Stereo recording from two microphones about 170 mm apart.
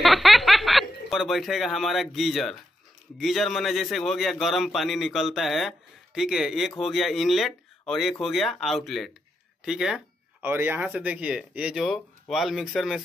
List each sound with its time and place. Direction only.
0.0 s a man's voice: centre (ahead or behind)